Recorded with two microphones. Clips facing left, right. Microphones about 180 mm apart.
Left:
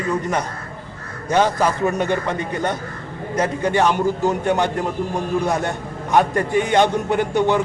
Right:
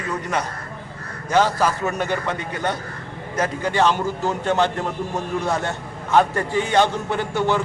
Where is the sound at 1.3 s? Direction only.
20° left (ahead or behind).